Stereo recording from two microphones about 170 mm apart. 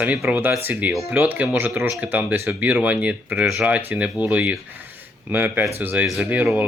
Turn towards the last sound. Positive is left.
turn(degrees=-10)  # may be behind; listen again after turning